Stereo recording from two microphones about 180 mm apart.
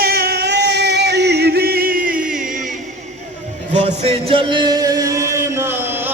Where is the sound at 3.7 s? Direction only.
40° right (ahead or behind); by 6.1 s 10° right (ahead or behind).